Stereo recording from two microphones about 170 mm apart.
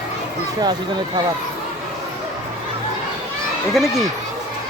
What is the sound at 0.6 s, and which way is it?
Speech, 25° right (ahead or behind).